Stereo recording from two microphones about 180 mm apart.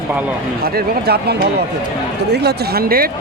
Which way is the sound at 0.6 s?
60° right (ahead or behind).